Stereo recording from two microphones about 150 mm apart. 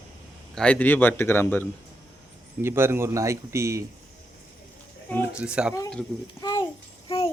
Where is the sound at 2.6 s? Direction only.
15° right (ahead or behind).